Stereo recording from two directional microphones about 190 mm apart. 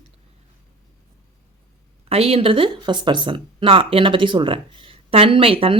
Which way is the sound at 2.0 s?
30° right (ahead or behind).